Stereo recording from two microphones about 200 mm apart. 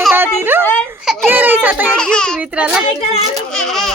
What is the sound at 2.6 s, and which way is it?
A woman's voice, 5° right (ahead or behind).